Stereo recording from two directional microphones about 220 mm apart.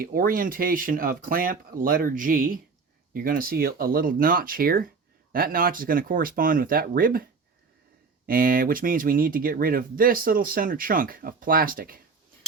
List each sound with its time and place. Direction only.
0.0 s speech: 40° right (ahead or behind)
8.3 s speech: 40° right (ahead or behind)